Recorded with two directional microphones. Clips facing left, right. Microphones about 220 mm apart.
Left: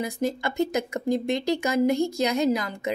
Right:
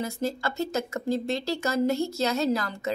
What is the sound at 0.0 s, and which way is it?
Speech, 15° left (ahead or behind).